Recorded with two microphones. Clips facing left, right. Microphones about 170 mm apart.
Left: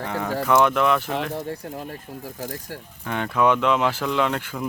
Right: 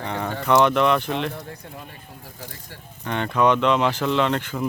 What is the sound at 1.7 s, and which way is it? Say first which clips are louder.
Speech: left 7 dB; 45° left (ahead or behind).